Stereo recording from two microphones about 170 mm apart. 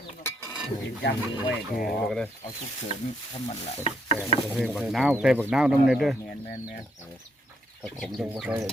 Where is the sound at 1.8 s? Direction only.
5° left (ahead or behind).